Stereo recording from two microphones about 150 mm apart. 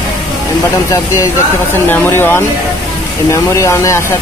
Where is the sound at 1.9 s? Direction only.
15° left (ahead or behind).